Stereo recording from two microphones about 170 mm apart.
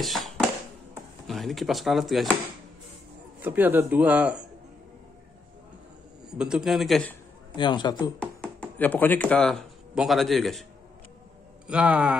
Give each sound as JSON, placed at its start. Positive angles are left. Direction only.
{"t": 0.0, "sound": "tap", "side_deg": 0}
{"t": 1.2, "sound": "speech", "side_deg": 0}
{"t": 3.3, "sound": "speech", "side_deg": -10}
{"t": 6.3, "sound": "a man's voice", "side_deg": -5}
{"t": 7.5, "sound": "a man's voice", "side_deg": 25}
{"t": 8.2, "sound": "speech", "side_deg": 5}
{"t": 11.6, "sound": "speech", "side_deg": -5}